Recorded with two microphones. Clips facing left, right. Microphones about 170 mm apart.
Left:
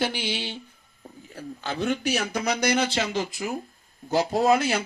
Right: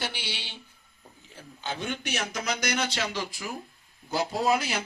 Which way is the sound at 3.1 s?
50° left (ahead or behind).